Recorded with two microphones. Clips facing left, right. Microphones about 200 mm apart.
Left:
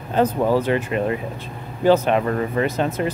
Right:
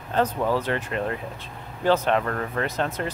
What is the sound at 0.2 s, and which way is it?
Speech, 5° left (ahead or behind).